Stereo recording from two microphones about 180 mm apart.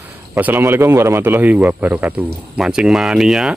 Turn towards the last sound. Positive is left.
turn(degrees=-5)  # may be behind; listen again after turning